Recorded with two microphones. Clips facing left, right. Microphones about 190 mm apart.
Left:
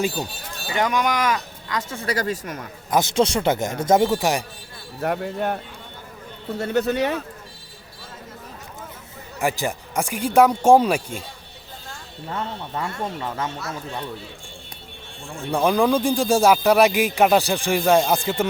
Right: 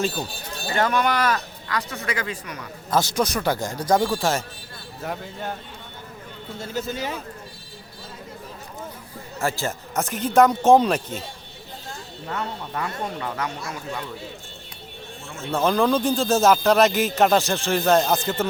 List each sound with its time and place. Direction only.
0.7 s speech: 15° left (ahead or behind)
1.9 s speech: 35° left (ahead or behind)
2.9 s speech: 25° left (ahead or behind)
5.0 s speech: 60° left (ahead or behind)
6.6 s speech: 65° left (ahead or behind)
9.4 s speech: 15° left (ahead or behind)
12.8 s speech: 25° left (ahead or behind)
15.4 s speech: 10° left (ahead or behind)